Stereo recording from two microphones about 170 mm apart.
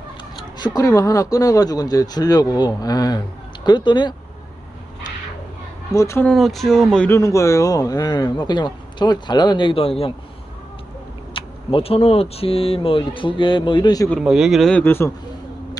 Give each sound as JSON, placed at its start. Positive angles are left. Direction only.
{"t": 0.6, "sound": "a man's voice", "side_deg": 20}
{"t": 5.9, "sound": "speech", "side_deg": 15}
{"t": 6.3, "sound": "speech", "side_deg": 0}
{"t": 7.1, "sound": "a man's voice", "side_deg": 20}
{"t": 11.3, "sound": "speech", "side_deg": 35}
{"t": 14.1, "sound": "speech", "side_deg": -5}